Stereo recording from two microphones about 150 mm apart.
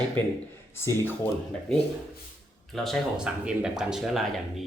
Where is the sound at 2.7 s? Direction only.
5° left (ahead or behind).